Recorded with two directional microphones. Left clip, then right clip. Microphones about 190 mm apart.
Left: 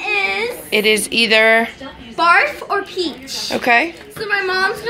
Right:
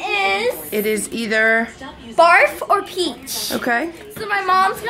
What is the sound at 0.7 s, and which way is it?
Speech, centre (ahead or behind).